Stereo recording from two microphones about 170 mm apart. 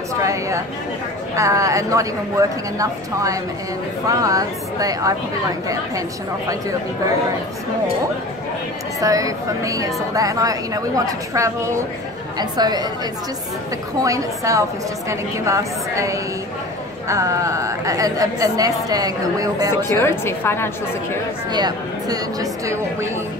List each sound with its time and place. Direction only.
0.2 s chatter: 20° right (ahead or behind)
1.3 s a woman's voice: 20° right (ahead or behind)
9.0 s a woman's voice: 20° right (ahead or behind)
14.0 s a woman's voice: 20° right (ahead or behind)
20.0 s a woman's voice: 15° left (ahead or behind)
21.5 s a woman's voice: 25° right (ahead or behind)